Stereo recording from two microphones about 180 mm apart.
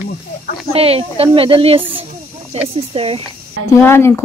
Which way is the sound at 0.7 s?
35° right (ahead or behind).